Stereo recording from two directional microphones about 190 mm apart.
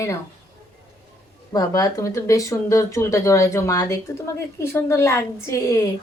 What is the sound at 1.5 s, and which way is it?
A woman's voice, 20° left (ahead or behind).